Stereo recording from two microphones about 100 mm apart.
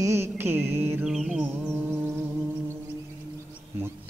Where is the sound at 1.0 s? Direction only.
5° right (ahead or behind).